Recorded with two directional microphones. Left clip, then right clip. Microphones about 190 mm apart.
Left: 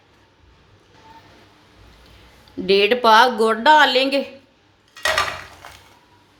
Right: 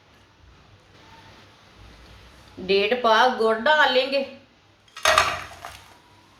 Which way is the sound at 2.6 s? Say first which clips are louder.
Left 5 dB; 60° left (ahead or behind).